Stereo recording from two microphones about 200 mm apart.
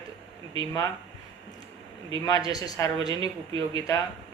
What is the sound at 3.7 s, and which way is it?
Speech, 20° left (ahead or behind).